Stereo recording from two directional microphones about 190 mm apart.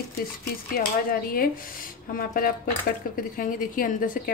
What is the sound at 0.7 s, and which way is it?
Speech, 50° left (ahead or behind).